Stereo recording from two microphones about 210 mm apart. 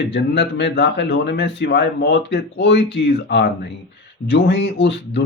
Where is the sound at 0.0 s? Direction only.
55° left (ahead or behind).